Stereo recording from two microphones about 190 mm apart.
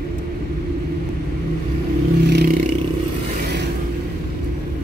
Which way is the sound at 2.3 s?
60° right (ahead or behind).